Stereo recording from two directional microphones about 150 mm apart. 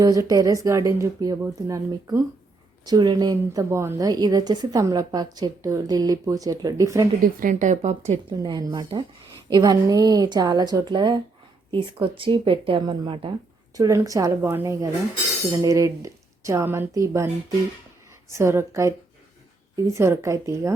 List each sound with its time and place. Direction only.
0.0 s a woman's voice: 25° right (ahead or behind)
7.2 s speech: 70° right (ahead or behind); by 8.2 s 50° right (ahead or behind)
8.3 s a woman's voice: 25° right (ahead or behind)
18.3 s a woman's voice: 20° right (ahead or behind)